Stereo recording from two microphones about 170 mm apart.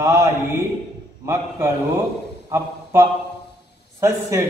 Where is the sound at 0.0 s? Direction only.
15° right (ahead or behind).